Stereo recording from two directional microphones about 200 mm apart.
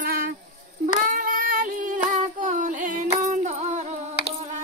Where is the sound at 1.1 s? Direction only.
45° right (ahead or behind).